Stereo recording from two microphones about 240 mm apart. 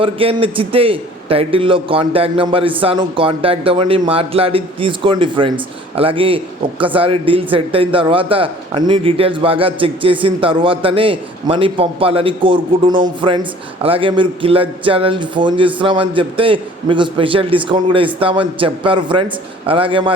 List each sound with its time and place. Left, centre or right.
0.0 s a man's voice: right